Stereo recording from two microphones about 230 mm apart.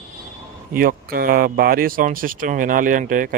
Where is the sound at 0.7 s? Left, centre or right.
Right.